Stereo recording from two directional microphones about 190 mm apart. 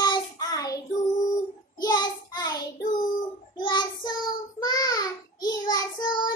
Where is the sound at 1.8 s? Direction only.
20° left (ahead or behind).